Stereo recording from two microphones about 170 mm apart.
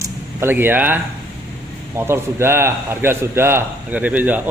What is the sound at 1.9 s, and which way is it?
A man's voice, 15° right (ahead or behind).